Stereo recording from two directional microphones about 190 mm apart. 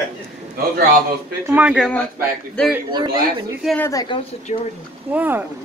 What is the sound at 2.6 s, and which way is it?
Speech, 5° left (ahead or behind).